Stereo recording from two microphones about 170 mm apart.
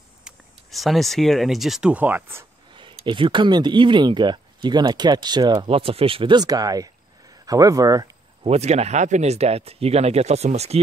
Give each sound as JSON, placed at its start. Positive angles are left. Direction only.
{"t": 0.2, "sound": "speech", "side_deg": 0}
{"t": 2.7, "sound": "a sound", "side_deg": -30}
{"t": 3.1, "sound": "speech", "side_deg": -30}
{"t": 8.5, "sound": "speech", "side_deg": -40}